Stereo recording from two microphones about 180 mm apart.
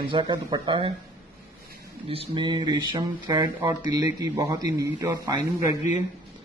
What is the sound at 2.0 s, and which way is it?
Speech, 30° right (ahead or behind).